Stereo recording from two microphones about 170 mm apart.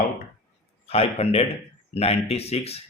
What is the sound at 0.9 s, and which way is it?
Speech, 35° left (ahead or behind).